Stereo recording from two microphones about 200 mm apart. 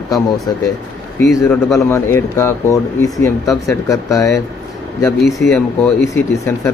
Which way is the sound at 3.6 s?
15° left (ahead or behind).